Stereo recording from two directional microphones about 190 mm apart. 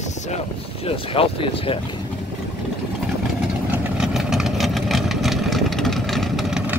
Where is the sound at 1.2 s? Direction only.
30° left (ahead or behind).